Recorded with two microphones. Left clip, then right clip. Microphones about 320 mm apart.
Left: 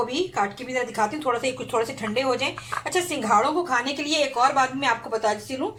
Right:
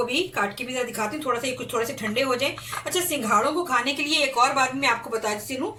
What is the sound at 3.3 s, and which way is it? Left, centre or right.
A woman's voice, centre.